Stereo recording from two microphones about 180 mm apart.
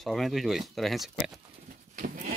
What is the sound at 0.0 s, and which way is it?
Speech, centre (ahead or behind).